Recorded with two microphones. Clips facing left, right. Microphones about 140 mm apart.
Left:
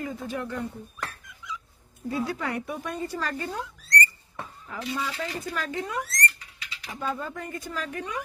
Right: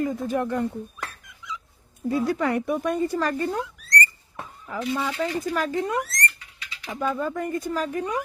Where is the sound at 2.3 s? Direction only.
50° right (ahead or behind).